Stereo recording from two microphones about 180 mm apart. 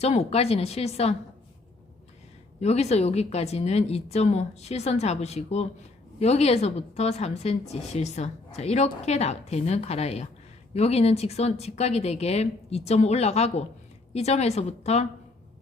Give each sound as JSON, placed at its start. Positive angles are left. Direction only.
{"t": 0.0, "sound": "a woman's voice", "side_deg": 35}
{"t": 2.6, "sound": "a woman's voice", "side_deg": 35}